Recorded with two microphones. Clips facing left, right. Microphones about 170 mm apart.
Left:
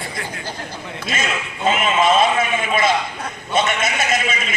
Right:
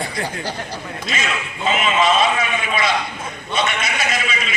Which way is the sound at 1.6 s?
50° left (ahead or behind).